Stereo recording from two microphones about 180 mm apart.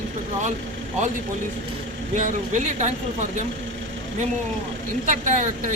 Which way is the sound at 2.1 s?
40° right (ahead or behind).